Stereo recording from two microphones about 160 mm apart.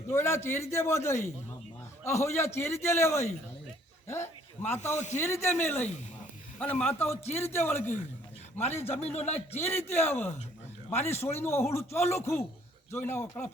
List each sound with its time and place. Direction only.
0.1 s a man's voice: 15° left (ahead or behind)
4.0 s a sound: 15° left (ahead or behind)
4.9 s a man's voice: 45° left (ahead or behind)
5.2 s a man's voice: 15° left (ahead or behind)
9.1 s a man's voice: 40° left (ahead or behind)
9.6 s a man's voice: 15° left (ahead or behind)